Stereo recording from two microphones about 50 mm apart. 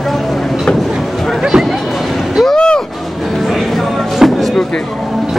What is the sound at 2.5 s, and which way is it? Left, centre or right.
Music, centre.